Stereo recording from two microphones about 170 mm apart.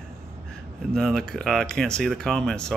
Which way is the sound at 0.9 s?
5° left (ahead or behind).